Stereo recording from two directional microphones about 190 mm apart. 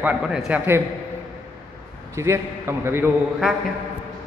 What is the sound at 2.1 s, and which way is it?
A man's voice, 15° right (ahead or behind).